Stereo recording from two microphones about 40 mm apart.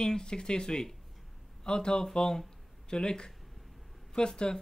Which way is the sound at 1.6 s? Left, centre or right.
Centre.